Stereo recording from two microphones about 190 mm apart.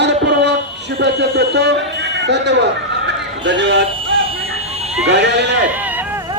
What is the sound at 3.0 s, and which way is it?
Music, 65° right (ahead or behind).